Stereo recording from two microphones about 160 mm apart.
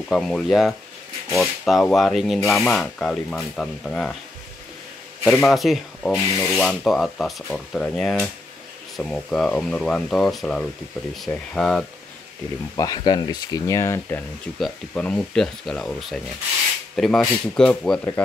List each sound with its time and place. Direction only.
0.1 s speech: 5° left (ahead or behind)
5.2 s speech: 5° left (ahead or behind)
12.7 s speech: 25° left (ahead or behind); by 18.0 s 5° left (ahead or behind)